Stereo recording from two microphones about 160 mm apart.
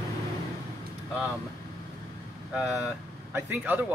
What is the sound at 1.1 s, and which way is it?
Speech, 5° right (ahead or behind).